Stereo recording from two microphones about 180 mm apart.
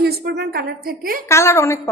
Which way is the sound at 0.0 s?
60° right (ahead or behind).